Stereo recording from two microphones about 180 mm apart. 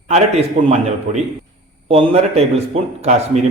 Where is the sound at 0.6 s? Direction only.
40° right (ahead or behind).